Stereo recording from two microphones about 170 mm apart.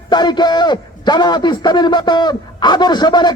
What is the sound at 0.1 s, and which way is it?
A man's voice, 25° left (ahead or behind).